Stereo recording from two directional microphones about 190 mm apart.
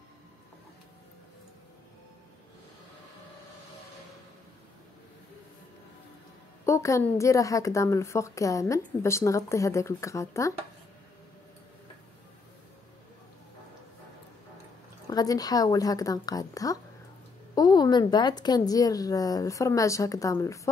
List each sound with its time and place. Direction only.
6.6 s a woman's voice: 15° left (ahead or behind)
15.0 s a woman's voice: 20° left (ahead or behind)